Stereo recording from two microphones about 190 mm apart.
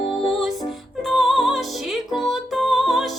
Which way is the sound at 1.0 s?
Centre (ahead or behind).